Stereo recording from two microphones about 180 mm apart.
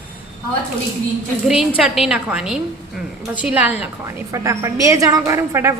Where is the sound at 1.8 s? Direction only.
Centre (ahead or behind).